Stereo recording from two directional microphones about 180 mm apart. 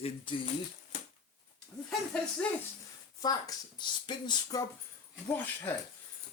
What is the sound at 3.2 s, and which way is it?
Speech, 25° left (ahead or behind).